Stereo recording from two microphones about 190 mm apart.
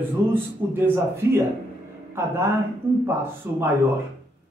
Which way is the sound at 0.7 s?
10° right (ahead or behind).